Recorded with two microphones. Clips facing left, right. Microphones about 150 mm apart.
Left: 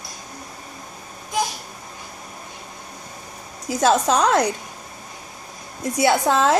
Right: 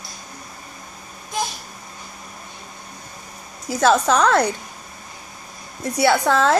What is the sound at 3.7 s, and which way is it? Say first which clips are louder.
Speech: right 1 dB; 15° left (ahead or behind).